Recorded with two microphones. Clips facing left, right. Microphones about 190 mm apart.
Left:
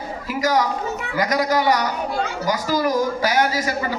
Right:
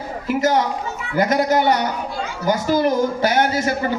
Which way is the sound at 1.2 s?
25° right (ahead or behind).